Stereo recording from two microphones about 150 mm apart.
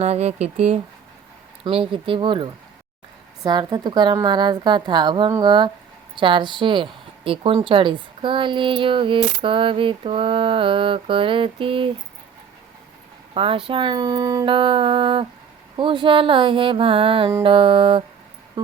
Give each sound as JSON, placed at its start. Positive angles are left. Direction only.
{"t": 0.0, "sound": "speech", "side_deg": -45}
{"t": 1.6, "sound": "a woman's voice", "side_deg": -35}
{"t": 13.3, "sound": "a woman's voice", "side_deg": -35}
{"t": 14.4, "sound": "a woman's voice", "side_deg": -35}